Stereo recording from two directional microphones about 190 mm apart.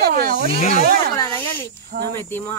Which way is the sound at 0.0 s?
50° right (ahead or behind).